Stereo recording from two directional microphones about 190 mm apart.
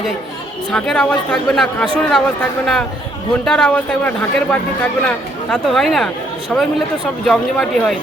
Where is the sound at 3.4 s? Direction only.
5° left (ahead or behind).